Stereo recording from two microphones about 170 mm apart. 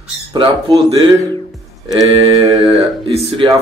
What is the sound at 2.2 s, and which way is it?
Speech, 20° right (ahead or behind).